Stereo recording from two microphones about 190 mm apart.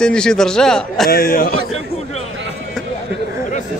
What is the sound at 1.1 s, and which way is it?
Speech, 50° left (ahead or behind).